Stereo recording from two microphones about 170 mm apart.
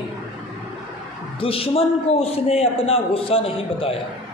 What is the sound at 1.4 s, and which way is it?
A man's voice, 35° left (ahead or behind).